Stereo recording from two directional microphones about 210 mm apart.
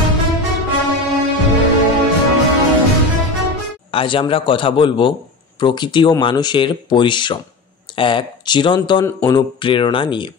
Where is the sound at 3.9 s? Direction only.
25° left (ahead or behind).